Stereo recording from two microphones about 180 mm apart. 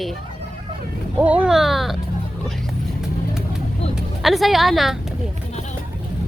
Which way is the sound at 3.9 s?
Centre (ahead or behind).